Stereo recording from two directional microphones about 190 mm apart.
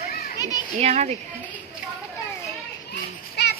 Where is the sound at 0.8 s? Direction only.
35° right (ahead or behind).